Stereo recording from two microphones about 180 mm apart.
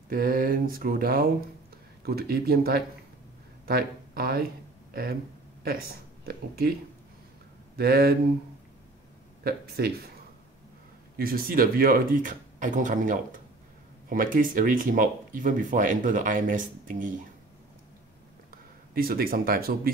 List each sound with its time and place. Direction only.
0.1 s speech: 55° right (ahead or behind)
5.6 s speech: 55° right (ahead or behind)
7.7 s speech: 60° right (ahead or behind)
9.4 s speech: 60° right (ahead or behind)
11.1 s speech: 55° right (ahead or behind)
18.9 s speech: 55° right (ahead or behind)